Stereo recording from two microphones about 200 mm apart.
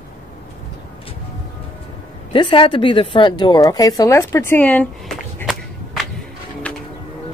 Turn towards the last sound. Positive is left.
turn(degrees=5)  # may be behind; listen again after turning